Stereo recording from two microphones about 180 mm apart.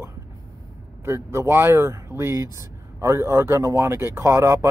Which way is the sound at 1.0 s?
15° right (ahead or behind).